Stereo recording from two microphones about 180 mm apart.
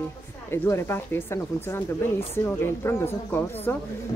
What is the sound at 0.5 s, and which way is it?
Speech, 15° left (ahead or behind).